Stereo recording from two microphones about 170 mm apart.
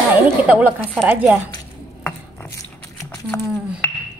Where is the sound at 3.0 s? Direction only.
15° left (ahead or behind).